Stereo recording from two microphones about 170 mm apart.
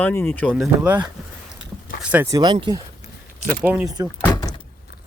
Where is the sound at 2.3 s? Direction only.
25° right (ahead or behind).